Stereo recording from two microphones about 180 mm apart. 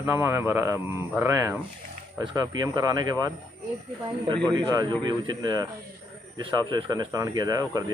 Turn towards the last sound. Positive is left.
turn(degrees=-20)  # may be behind; listen again after turning